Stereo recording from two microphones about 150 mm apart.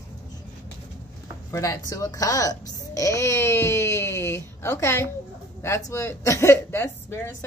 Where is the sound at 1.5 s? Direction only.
20° left (ahead or behind).